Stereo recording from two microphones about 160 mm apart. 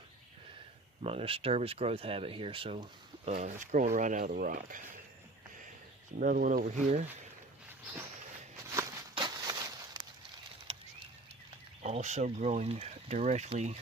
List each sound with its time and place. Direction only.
1.0 s speech: 35° right (ahead or behind); by 4.8 s 60° right (ahead or behind)
6.1 s speech: 60° right (ahead or behind)
8.6 s walk: 20° right (ahead or behind)
9.1 s a sound: 25° right (ahead or behind)
10.7 s a sound: 35° right (ahead or behind)
11.8 s speech: 45° right (ahead or behind)